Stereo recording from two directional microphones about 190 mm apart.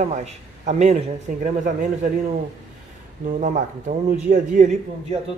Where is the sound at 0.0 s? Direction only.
35° right (ahead or behind).